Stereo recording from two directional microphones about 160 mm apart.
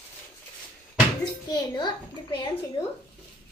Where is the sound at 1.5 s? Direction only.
25° left (ahead or behind).